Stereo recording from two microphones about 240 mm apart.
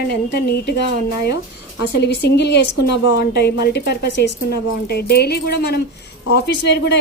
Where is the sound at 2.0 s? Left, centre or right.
Left.